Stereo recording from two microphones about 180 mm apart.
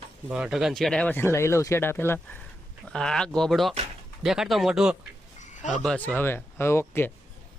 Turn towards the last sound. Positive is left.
turn(degrees=15)  # may be behind; listen again after turning